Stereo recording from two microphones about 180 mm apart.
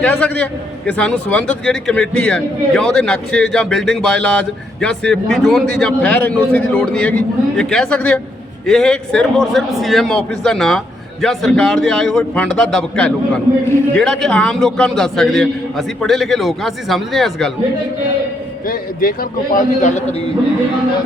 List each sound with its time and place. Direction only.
0.0 s a man's voice: 5° left (ahead or behind)
18.6 s a man's voice: 55° left (ahead or behind)